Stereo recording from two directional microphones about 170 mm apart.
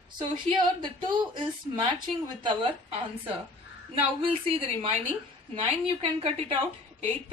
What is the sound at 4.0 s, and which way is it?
Speech, 35° right (ahead or behind).